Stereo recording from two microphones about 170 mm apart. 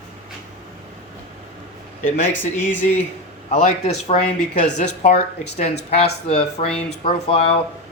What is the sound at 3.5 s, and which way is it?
Speech, 40° left (ahead or behind).